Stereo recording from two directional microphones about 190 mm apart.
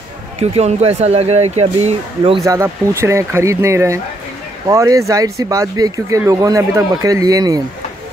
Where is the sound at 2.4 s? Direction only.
15° right (ahead or behind).